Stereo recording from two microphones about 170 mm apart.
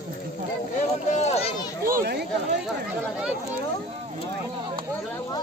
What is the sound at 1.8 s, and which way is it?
Children playing, 65° right (ahead or behind).